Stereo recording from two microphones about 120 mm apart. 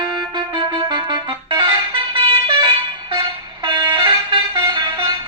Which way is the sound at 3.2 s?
40° right (ahead or behind).